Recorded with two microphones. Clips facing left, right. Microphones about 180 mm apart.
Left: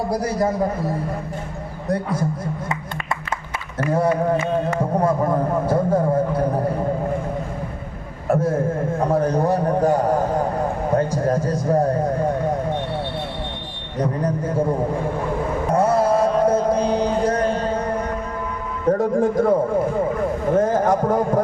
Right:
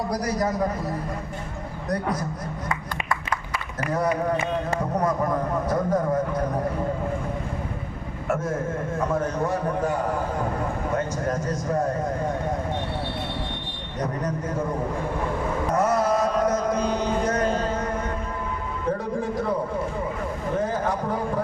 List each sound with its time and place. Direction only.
0.1 s a man's voice: 30° left (ahead or behind)
8.3 s a man's voice: 30° left (ahead or behind)
14.0 s a man's voice: 30° left (ahead or behind)
15.7 s mantra: 30° left (ahead or behind)
18.9 s music: 45° left (ahead or behind)
20.6 s speech: 45° left (ahead or behind)